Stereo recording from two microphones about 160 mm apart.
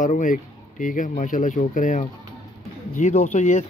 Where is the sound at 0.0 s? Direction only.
50° left (ahead or behind).